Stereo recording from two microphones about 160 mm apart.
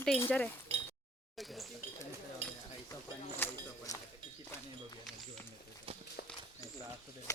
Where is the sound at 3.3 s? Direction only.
15° left (ahead or behind).